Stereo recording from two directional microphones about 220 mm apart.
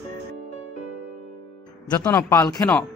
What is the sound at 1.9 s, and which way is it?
Speech, 10° left (ahead or behind).